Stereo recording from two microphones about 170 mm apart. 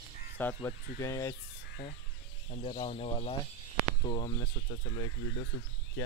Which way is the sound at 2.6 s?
30° left (ahead or behind).